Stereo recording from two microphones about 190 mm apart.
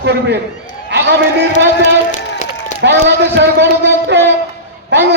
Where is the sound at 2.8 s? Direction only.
65° right (ahead or behind).